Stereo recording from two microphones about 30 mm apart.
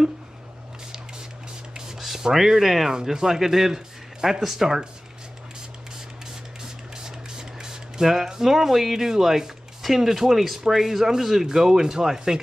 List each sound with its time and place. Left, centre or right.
2.3 s speech: centre
7.0 s a sound: right
8.0 s speech: centre